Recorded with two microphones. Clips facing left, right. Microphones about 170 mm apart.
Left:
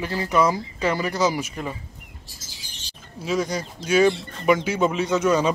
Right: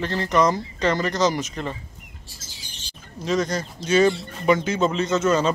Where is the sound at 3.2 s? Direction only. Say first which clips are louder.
Right 1 dB; 10° left (ahead or behind).